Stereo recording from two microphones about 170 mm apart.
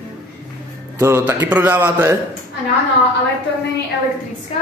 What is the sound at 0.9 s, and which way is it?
A man's voice, 10° right (ahead or behind).